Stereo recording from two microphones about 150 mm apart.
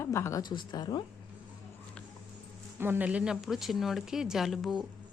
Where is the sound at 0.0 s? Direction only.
15° left (ahead or behind).